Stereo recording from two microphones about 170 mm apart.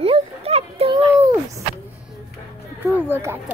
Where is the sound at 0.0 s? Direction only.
35° right (ahead or behind).